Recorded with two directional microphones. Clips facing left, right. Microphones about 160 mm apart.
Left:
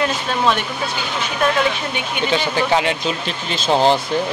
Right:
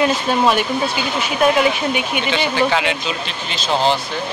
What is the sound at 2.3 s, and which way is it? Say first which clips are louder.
Speech: even; 40° left (ahead or behind).